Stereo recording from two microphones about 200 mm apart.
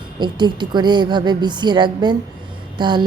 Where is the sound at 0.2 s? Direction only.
20° right (ahead or behind).